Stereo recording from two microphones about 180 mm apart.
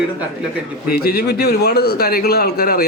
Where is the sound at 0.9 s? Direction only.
60° left (ahead or behind).